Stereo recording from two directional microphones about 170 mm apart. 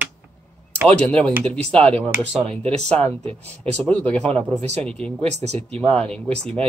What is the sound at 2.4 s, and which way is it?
Speech, 35° right (ahead or behind).